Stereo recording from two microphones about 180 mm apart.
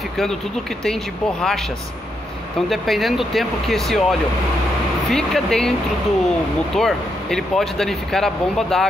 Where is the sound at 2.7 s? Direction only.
Centre (ahead or behind).